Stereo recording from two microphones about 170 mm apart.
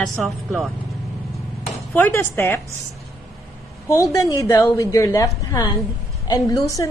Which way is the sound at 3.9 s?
20° left (ahead or behind).